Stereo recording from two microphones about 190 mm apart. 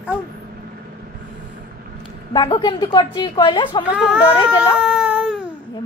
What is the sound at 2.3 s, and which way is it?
A woman's voice, 25° left (ahead or behind).